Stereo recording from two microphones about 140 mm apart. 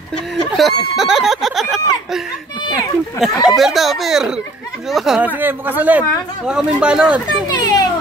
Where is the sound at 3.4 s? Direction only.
Centre (ahead or behind).